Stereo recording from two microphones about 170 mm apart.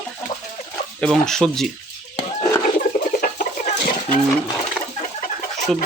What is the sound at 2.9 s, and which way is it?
Chicken, 60° left (ahead or behind).